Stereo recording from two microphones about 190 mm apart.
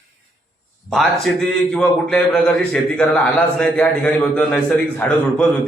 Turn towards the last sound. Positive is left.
turn(degrees=5)  # may be behind; listen again after turning